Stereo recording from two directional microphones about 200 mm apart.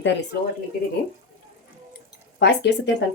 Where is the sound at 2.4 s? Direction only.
60° left (ahead or behind).